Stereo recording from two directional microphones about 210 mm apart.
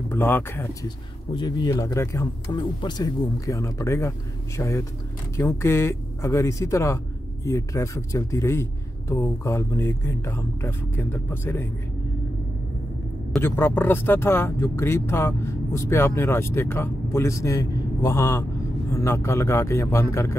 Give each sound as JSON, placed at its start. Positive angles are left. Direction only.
{"t": 0.1, "sound": "speech", "side_deg": 10}
{"t": 13.4, "sound": "speech", "side_deg": 10}